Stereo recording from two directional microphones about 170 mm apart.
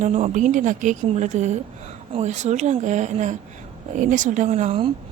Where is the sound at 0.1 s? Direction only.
40° right (ahead or behind).